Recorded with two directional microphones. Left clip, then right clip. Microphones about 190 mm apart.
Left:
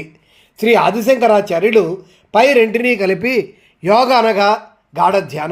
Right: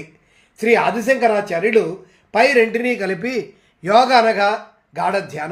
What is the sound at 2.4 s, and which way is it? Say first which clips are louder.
Speech: left 3 dB; 40° left (ahead or behind).